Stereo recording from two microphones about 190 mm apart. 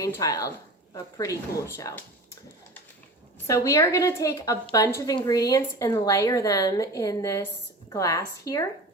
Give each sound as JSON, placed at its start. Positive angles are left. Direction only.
{"t": 0.2, "sound": "speech", "side_deg": 20}